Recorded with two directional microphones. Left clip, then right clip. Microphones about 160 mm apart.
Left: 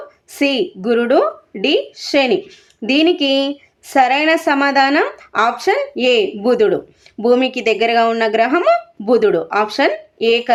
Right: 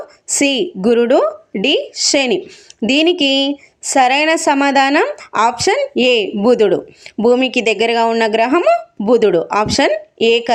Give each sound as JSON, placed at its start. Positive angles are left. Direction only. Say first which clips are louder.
{"t": 0.3, "sound": "a woman's voice", "louder": "right 2 dB", "side_deg": -35}